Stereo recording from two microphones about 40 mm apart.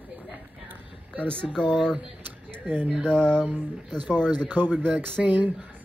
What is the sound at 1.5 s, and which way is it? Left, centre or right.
Speech, centre.